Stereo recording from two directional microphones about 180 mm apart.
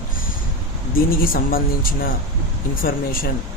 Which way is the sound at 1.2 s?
50° left (ahead or behind).